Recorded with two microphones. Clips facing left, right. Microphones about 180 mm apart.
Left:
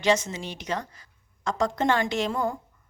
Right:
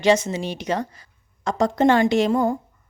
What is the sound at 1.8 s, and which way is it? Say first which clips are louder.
Speech: right 10 dB; 65° right (ahead or behind).